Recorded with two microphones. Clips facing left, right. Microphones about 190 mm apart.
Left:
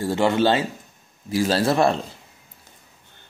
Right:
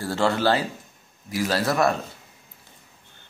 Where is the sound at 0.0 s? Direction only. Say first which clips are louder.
Left 3 dB; 20° left (ahead or behind).